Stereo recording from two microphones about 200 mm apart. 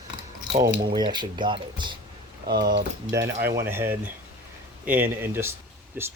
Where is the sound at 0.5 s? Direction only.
20° right (ahead or behind).